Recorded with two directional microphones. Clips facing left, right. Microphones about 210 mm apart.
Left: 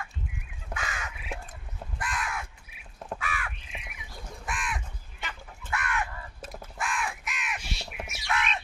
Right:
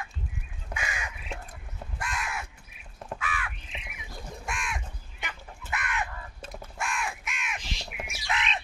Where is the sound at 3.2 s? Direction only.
45° left (ahead or behind).